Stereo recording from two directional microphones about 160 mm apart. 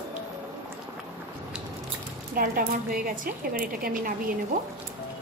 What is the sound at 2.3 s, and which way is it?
A woman's voice, 65° right (ahead or behind).